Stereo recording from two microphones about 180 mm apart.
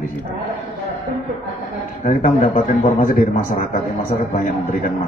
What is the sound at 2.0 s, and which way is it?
Speech, 50° left (ahead or behind).